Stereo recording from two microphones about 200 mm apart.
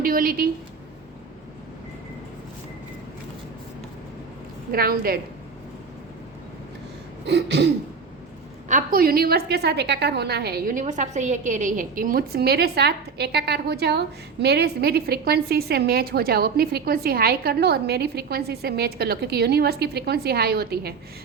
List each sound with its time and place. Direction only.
0.0 s a woman's voice: 45° right (ahead or behind)
4.7 s a woman's voice: 50° right (ahead or behind)
7.3 s throat clearing: 60° right (ahead or behind)
8.7 s a woman's voice: 45° right (ahead or behind)